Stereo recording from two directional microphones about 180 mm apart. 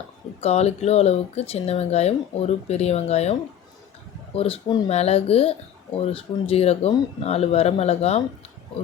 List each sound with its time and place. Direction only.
0.4 s speech: 35° left (ahead or behind)
4.4 s speech: 30° left (ahead or behind)